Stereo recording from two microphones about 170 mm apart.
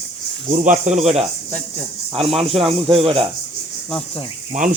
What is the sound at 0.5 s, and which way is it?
A man's voice, 45° right (ahead or behind).